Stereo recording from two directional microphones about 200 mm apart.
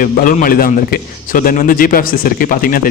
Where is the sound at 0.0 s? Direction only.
45° left (ahead or behind).